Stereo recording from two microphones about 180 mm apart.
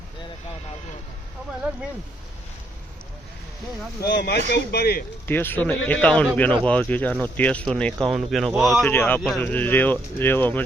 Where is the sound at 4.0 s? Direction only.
65° left (ahead or behind).